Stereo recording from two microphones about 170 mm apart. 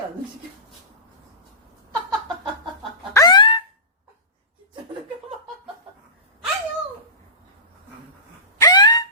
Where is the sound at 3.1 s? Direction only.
25° left (ahead or behind).